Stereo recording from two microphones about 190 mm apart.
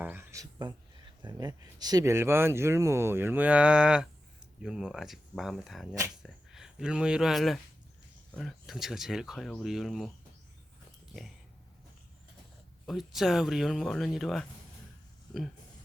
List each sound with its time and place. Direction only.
0.0 s speech: 10° right (ahead or behind)
12.8 s speech: centre (ahead or behind)